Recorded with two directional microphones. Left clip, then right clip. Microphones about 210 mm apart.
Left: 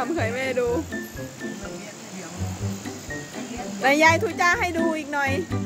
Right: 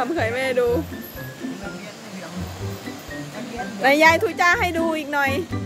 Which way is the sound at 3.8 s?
Centre (ahead or behind).